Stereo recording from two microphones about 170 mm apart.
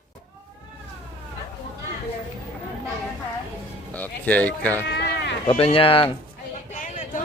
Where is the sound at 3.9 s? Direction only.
10° left (ahead or behind).